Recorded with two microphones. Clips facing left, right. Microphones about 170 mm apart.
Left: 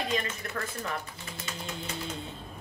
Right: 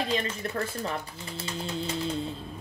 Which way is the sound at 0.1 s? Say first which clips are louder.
Right 3 dB; 30° right (ahead or behind).